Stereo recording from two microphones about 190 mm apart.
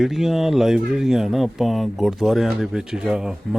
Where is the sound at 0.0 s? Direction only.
Centre (ahead or behind).